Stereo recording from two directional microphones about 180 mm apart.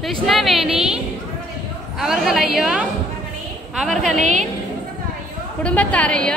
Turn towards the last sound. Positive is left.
turn(degrees=5)  # may be behind; listen again after turning